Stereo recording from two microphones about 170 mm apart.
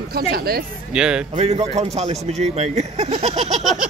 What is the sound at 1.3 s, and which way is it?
Speech, 40° right (ahead or behind).